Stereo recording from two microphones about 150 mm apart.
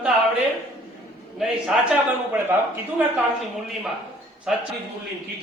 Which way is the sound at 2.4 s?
15° right (ahead or behind).